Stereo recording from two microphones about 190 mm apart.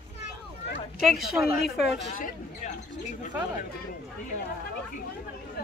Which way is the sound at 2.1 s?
40° left (ahead or behind).